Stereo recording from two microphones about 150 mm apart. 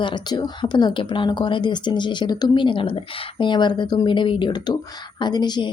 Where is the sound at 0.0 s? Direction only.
30° left (ahead or behind).